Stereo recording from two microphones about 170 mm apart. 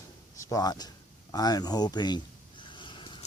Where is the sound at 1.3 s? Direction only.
25° left (ahead or behind).